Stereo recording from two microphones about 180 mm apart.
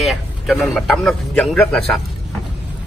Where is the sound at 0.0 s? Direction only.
Centre (ahead or behind).